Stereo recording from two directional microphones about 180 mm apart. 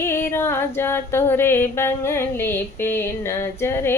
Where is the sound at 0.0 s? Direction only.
15° left (ahead or behind).